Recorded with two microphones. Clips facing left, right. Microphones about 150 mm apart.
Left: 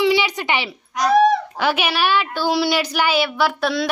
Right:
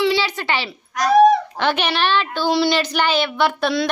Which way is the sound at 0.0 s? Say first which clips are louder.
Left 1 dB; 15° left (ahead or behind).